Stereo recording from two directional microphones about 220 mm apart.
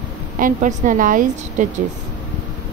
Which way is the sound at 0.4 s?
35° right (ahead or behind).